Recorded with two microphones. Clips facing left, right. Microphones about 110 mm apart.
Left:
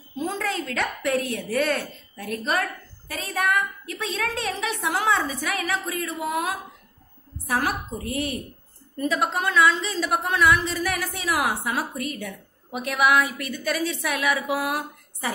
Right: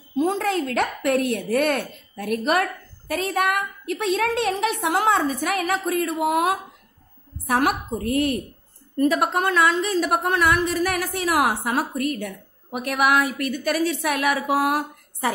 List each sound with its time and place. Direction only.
0.2 s a woman's voice: 55° right (ahead or behind)